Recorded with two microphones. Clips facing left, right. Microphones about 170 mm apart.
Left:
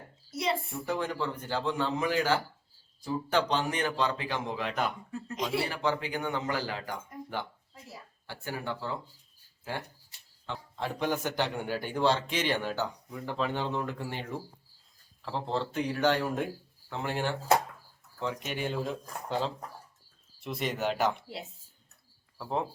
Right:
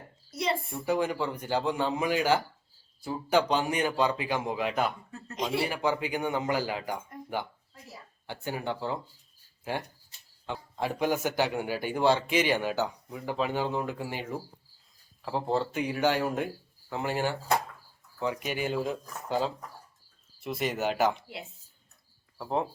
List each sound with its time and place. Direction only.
0.3 s a sound: centre (ahead or behind)
0.9 s a man's voice: 10° right (ahead or behind)
5.6 s a man's voice: 10° right (ahead or behind)
8.3 s speech: 20° right (ahead or behind)
10.4 s a man's voice: 10° right (ahead or behind)
22.4 s speech: centre (ahead or behind)